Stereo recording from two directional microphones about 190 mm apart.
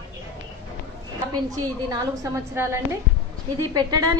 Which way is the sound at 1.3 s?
20° right (ahead or behind).